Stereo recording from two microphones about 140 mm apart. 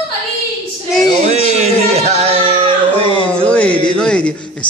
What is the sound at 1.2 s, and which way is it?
Speech, 50° right (ahead or behind).